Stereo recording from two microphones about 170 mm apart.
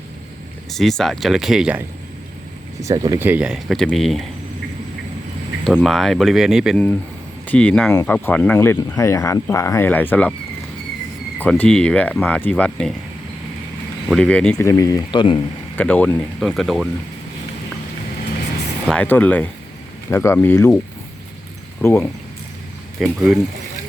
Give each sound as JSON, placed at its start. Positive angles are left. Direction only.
{"t": 0.7, "sound": "speech", "side_deg": 0}
{"t": 2.8, "sound": "speech", "side_deg": -20}
{"t": 3.2, "sound": "speech", "side_deg": -5}
{"t": 5.7, "sound": "speech", "side_deg": 0}
{"t": 7.4, "sound": "speech", "side_deg": 10}
{"t": 11.3, "sound": "speech", "side_deg": 10}
{"t": 14.1, "sound": "speech", "side_deg": 5}
{"t": 14.7, "sound": "speech", "side_deg": 20}
{"t": 15.8, "sound": "speech", "side_deg": 10}
{"t": 18.9, "sound": "speech", "side_deg": 10}
{"t": 21.8, "sound": "speech", "side_deg": 15}
{"t": 23.0, "sound": "speech", "side_deg": 0}